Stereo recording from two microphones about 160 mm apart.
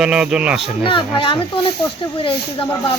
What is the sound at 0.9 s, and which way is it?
Speech, 35° left (ahead or behind).